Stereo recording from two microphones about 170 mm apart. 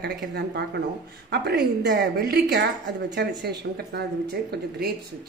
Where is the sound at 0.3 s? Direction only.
75° right (ahead or behind).